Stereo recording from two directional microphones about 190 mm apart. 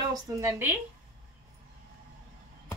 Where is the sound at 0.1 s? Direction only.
15° right (ahead or behind).